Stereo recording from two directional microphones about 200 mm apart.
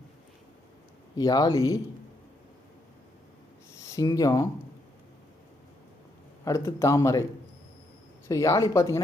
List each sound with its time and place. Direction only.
1.1 s speech: 20° left (ahead or behind)
3.9 s speech: 15° left (ahead or behind)
6.7 s speech: 15° left (ahead or behind)
8.3 s speech: 15° left (ahead or behind)